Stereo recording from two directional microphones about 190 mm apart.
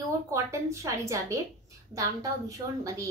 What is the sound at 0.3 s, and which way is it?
A woman's voice, 15° right (ahead or behind).